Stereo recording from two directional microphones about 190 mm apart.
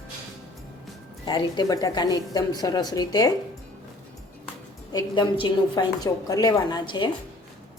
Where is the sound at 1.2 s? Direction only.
20° left (ahead or behind).